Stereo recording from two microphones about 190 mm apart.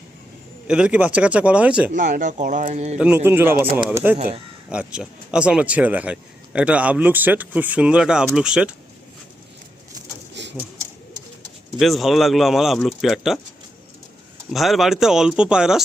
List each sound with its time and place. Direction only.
0.7 s speech: 5° right (ahead or behind)
1.9 s speech: 45° right (ahead or behind)
3.0 s speech: 10° right (ahead or behind)
10.4 s a sound: 65° right (ahead or behind)
11.8 s speech: centre (ahead or behind)
14.5 s speech: centre (ahead or behind)